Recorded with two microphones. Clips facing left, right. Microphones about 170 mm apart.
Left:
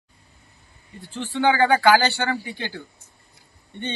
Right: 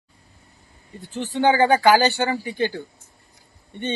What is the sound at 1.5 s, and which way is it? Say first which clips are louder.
Speech: right 1 dB; 15° right (ahead or behind).